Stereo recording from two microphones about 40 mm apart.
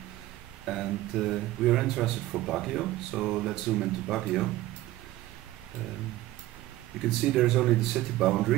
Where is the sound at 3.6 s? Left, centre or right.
Centre.